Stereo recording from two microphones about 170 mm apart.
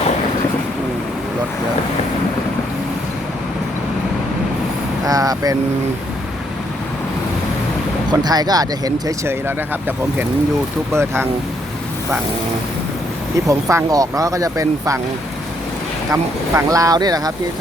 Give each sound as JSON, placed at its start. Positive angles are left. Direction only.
{"t": 5.0, "sound": "speech", "side_deg": -20}
{"t": 8.2, "sound": "speech", "side_deg": -25}
{"t": 13.5, "sound": "speech", "side_deg": -20}
{"t": 16.1, "sound": "speech", "side_deg": -20}